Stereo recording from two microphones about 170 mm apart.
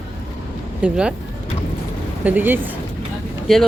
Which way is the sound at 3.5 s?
Centre (ahead or behind).